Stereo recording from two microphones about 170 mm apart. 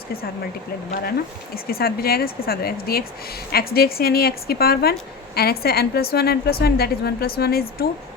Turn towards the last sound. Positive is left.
turn(degrees=65)  # may be behind; listen again after turning